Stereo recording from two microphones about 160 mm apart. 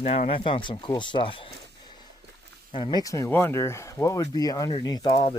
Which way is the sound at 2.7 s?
30° left (ahead or behind).